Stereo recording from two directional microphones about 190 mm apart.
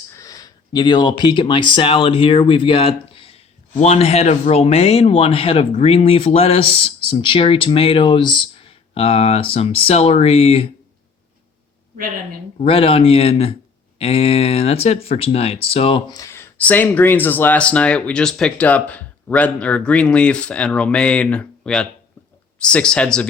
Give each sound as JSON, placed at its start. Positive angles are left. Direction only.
{"t": 0.1, "sound": "speech", "side_deg": 20}
{"t": 12.5, "sound": "speech", "side_deg": 30}
{"t": 16.2, "sound": "speech", "side_deg": 15}